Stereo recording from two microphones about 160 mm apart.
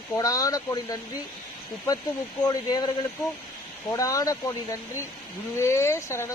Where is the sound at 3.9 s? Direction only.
20° left (ahead or behind).